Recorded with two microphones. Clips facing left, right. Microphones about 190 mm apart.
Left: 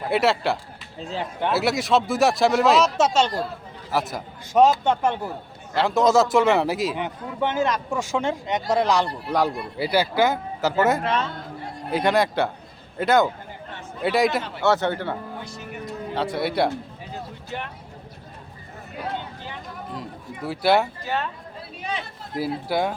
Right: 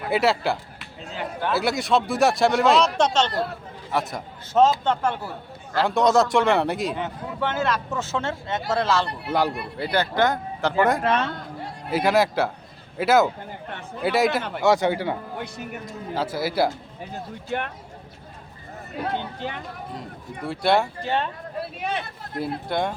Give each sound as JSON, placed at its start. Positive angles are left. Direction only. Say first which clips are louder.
{"t": 0.1, "sound": "speech", "louder": "even", "side_deg": 0}
{"t": 4.5, "sound": "speech", "louder": "left 1 dB", "side_deg": 15}
{"t": 5.7, "sound": "speech", "louder": "left 1 dB", "side_deg": 0}
{"t": 6.9, "sound": "speech", "louder": "even", "side_deg": 15}
{"t": 9.2, "sound": "speech", "louder": "left 1 dB", "side_deg": 0}
{"t": 11.0, "sound": "a man's voice", "louder": "right 2 dB", "side_deg": -55}
{"t": 11.9, "sound": "speech", "louder": "right 1 dB", "side_deg": -5}
{"t": 14.6, "sound": "a man's voice", "louder": "right 2 dB", "side_deg": -10}
{"t": 16.1, "sound": "speech", "louder": "even", "side_deg": 0}
{"t": 17.5, "sound": "a man's voice", "louder": "right 5 dB", "side_deg": -55}
{"t": 20.0, "sound": "speech", "louder": "left 1 dB", "side_deg": 0}
{"t": 21.8, "sound": "a sound", "louder": "right 1 dB", "side_deg": -60}
{"t": 22.4, "sound": "speech", "louder": "left 2 dB", "side_deg": 5}